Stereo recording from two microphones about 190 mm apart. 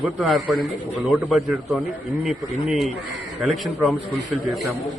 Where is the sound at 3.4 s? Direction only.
Centre (ahead or behind).